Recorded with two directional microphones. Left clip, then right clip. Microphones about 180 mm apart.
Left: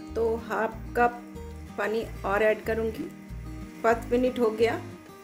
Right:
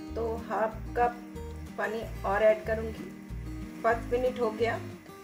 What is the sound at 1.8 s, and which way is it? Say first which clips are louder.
Music: left 4 dB; 60° left (ahead or behind).